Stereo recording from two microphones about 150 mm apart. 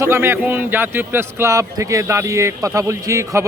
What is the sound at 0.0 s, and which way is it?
A man's voice, 15° right (ahead or behind).